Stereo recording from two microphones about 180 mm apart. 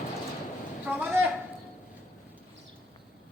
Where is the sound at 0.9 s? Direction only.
10° right (ahead or behind).